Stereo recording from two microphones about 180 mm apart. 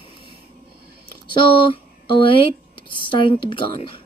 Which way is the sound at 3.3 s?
30° left (ahead or behind).